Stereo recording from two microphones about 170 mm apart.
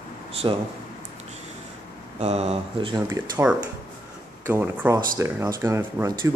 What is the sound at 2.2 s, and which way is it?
Speech, 35° right (ahead or behind).